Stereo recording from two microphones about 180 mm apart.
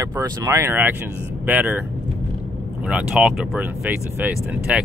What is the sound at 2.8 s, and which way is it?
Speech, 5° right (ahead or behind).